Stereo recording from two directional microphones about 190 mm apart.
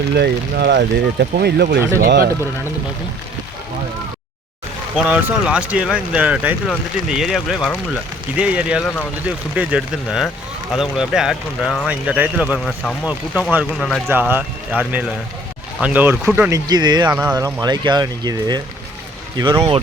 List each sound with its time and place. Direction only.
0.1 s speech: 60° right (ahead or behind)
4.9 s speech: 5° right (ahead or behind)
14.1 s speech: 10° right (ahead or behind)
16.5 s speech: 20° right (ahead or behind)
17.1 s speech: 10° right (ahead or behind)